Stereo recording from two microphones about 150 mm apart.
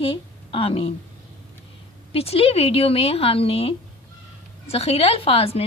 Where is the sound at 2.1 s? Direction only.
40° left (ahead or behind).